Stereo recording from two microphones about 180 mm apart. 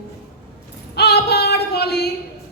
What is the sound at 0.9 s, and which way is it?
Female singing, 65° left (ahead or behind).